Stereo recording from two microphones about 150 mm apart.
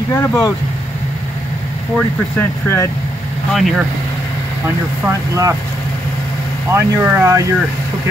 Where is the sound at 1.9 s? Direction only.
15° left (ahead or behind).